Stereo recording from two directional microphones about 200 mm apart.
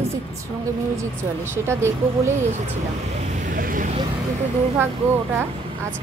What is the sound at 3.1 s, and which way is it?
Vehicle, 45° right (ahead or behind).